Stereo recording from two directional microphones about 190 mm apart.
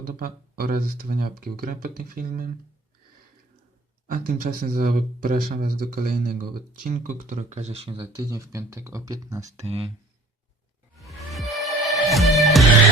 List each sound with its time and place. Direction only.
0.0 s speech: 50° right (ahead or behind)
4.0 s speech: 50° right (ahead or behind); by 9.6 s 20° right (ahead or behind)
9.6 s speech: 30° right (ahead or behind)
11.0 s music: centre (ahead or behind)